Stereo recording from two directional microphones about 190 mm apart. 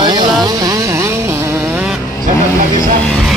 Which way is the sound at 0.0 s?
20° right (ahead or behind).